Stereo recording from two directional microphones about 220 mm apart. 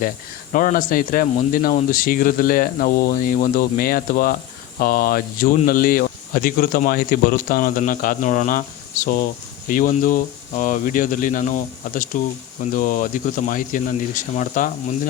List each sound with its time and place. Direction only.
0.5 s speech: 40° left (ahead or behind)